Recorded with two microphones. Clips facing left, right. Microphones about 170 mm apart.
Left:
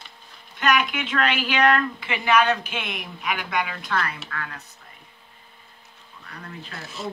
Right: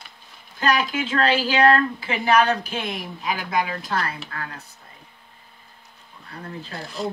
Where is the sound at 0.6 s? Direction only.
30° right (ahead or behind).